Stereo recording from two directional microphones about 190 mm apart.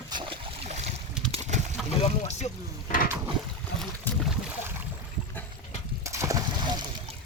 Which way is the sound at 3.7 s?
Centre (ahead or behind).